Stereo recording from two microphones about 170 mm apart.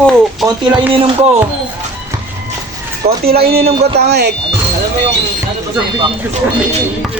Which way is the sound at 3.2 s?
65° right (ahead or behind).